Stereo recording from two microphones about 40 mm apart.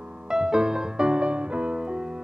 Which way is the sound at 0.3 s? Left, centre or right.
Centre.